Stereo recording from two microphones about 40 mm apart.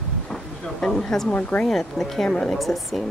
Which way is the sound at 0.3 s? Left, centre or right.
Centre.